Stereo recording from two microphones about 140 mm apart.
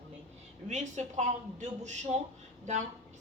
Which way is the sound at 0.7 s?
55° right (ahead or behind).